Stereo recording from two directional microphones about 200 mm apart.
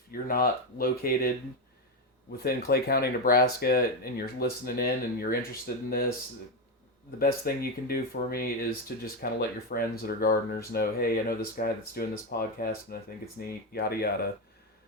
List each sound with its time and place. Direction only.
0.1 s speech: 45° left (ahead or behind)
2.4 s speech: 50° left (ahead or behind)
7.2 s speech: 50° left (ahead or behind)